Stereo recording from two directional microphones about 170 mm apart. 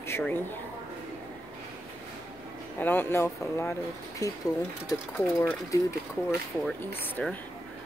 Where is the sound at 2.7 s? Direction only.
10° left (ahead or behind).